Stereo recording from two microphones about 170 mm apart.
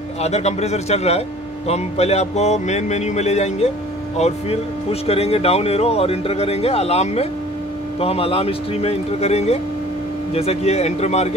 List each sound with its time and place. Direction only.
0.2 s speech: 40° left (ahead or behind)
5.0 s speech: 35° left (ahead or behind)